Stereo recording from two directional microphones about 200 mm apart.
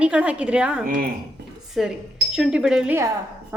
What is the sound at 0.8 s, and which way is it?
Speech, 45° right (ahead or behind).